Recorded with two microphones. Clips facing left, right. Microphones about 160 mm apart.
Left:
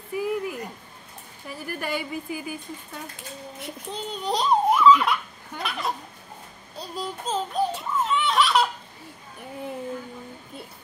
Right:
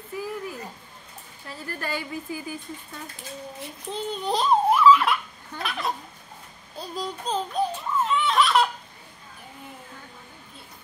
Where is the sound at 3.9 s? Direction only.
Centre (ahead or behind).